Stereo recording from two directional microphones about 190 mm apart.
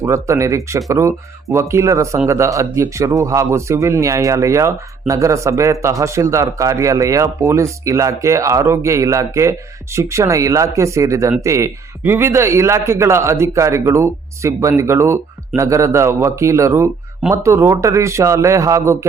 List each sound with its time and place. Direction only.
0.0 s speech: 15° right (ahead or behind)